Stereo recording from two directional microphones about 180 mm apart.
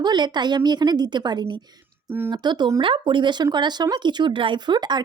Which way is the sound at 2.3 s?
25° right (ahead or behind).